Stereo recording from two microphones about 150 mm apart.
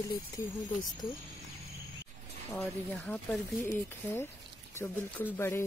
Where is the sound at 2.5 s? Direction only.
5° left (ahead or behind).